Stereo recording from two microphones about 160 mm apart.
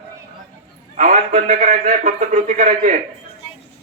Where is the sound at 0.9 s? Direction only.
60° right (ahead or behind).